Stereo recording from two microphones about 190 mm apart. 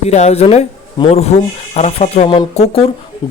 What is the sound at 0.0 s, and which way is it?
Speech, 35° left (ahead or behind).